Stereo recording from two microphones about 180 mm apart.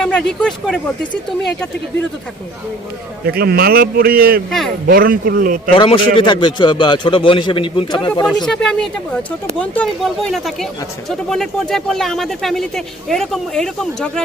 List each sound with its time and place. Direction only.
0.0 s speech: 5° left (ahead or behind)
3.2 s a man's voice: 60° right (ahead or behind)
5.7 s a man's voice: 30° left (ahead or behind)
8.4 s speech: 5° left (ahead or behind)